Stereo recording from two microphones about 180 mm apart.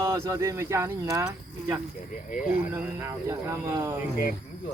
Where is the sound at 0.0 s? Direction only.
15° right (ahead or behind).